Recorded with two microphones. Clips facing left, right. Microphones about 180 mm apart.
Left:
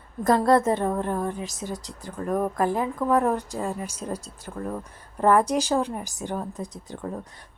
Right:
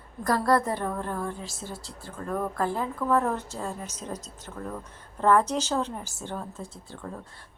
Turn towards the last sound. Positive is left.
turn(degrees=15)  # may be behind; listen again after turning